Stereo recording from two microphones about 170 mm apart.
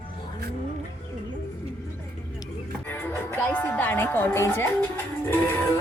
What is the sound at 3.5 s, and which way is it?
Speech, 10° left (ahead or behind).